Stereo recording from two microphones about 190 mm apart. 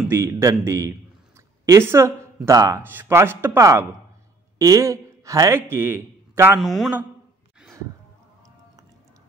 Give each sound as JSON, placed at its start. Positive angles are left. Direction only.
{"t": 0.1, "sound": "a man's voice", "side_deg": -15}
{"t": 6.6, "sound": "a man's voice", "side_deg": 0}